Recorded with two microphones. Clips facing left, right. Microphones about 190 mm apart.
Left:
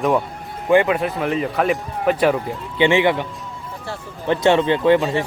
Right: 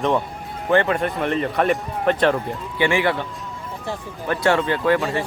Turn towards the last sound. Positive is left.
turn(degrees=20)  # may be behind; listen again after turning